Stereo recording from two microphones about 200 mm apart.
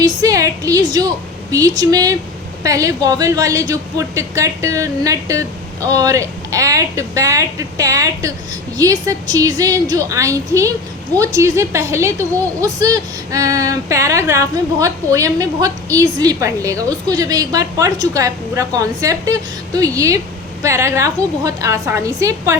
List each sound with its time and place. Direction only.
0.0 s a woman's voice: 15° right (ahead or behind)